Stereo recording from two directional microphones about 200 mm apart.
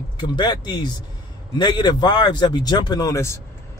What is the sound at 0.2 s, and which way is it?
A man's voice, 20° left (ahead or behind).